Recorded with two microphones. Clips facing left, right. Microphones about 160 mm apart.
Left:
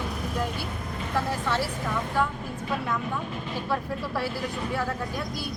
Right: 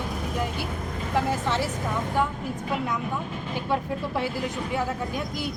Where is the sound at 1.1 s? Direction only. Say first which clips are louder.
Right 2 dB; 20° right (ahead or behind).